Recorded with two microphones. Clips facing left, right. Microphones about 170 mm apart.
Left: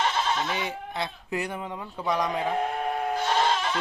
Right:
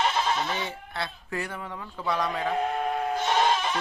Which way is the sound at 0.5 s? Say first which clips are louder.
Left 2 dB; 15° left (ahead or behind).